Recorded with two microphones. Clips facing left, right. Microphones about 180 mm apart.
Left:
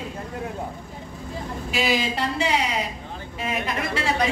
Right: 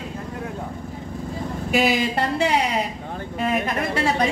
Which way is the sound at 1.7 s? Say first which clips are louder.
Right 4 dB; 55° right (ahead or behind).